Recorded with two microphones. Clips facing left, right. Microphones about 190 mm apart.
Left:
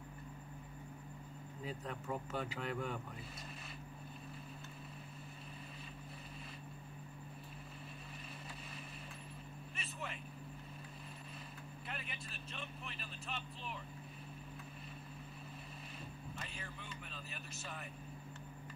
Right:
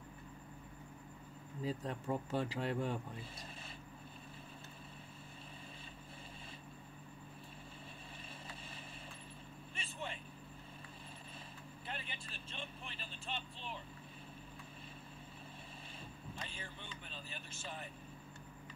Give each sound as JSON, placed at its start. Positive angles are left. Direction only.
{"t": 1.6, "sound": "speech", "side_deg": -35}
{"t": 9.8, "sound": "vehicle", "side_deg": -30}
{"t": 11.9, "sound": "vehicle", "side_deg": -30}
{"t": 16.4, "sound": "vehicle", "side_deg": -30}